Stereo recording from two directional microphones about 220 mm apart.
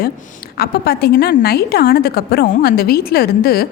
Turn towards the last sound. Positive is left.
turn(degrees=45)  # may be behind; listen again after turning